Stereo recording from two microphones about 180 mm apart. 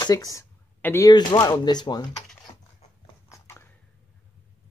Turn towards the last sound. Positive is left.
turn(degrees=15)  # may be behind; listen again after turning